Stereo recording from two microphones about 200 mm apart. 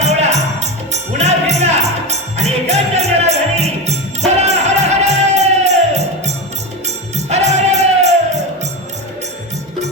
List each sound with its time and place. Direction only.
0.0 s music: 35° right (ahead or behind)